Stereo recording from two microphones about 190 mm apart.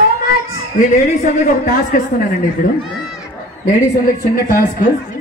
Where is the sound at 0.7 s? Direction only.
40° left (ahead or behind).